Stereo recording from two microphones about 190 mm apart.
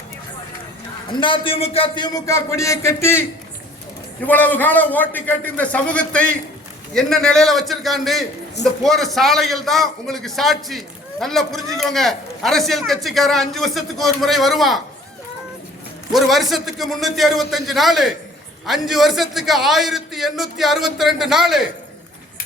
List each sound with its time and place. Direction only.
1.1 s a man's voice: 25° left (ahead or behind)
4.3 s a man's voice: 10° left (ahead or behind)
16.1 s a man's voice: centre (ahead or behind)